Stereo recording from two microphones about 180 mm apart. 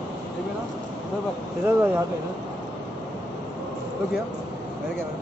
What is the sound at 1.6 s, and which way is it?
Speech, 15° right (ahead or behind).